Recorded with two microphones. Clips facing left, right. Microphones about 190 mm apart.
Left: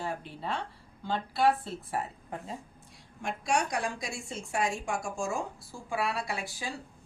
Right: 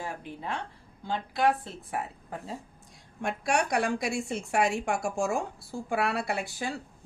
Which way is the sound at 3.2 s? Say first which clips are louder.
Right 2 dB; 60° right (ahead or behind).